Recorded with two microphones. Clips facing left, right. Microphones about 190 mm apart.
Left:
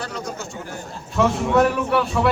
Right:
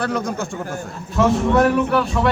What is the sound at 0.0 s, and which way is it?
Speech, 55° right (ahead or behind).